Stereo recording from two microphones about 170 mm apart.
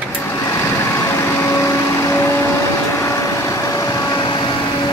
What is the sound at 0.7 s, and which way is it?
Vehicle, 15° left (ahead or behind).